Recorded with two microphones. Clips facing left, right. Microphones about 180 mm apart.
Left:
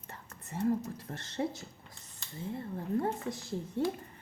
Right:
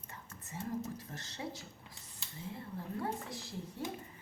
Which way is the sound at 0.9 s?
55° left (ahead or behind).